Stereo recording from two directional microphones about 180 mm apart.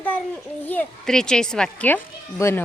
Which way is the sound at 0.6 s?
5° left (ahead or behind).